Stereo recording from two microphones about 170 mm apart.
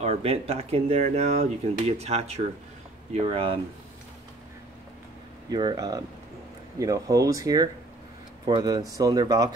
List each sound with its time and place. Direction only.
0.0 s speech: 35° right (ahead or behind)
5.5 s speech: 25° right (ahead or behind)